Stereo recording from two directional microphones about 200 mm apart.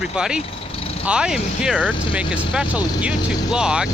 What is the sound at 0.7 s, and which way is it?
Vehicle, 30° left (ahead or behind).